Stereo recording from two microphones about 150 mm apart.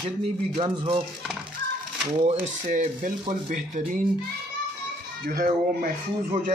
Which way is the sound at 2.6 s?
60° right (ahead or behind).